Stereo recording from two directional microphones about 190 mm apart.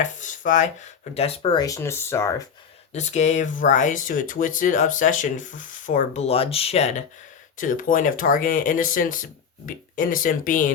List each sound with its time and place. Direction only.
0.0 s speech: 40° left (ahead or behind); by 2.3 s 15° left (ahead or behind)
2.9 s speech: 35° left (ahead or behind)